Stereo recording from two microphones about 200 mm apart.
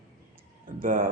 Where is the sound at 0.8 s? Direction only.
45° right (ahead or behind).